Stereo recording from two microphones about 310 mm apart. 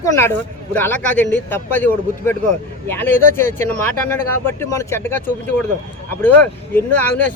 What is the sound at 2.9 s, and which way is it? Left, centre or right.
Speech, centre.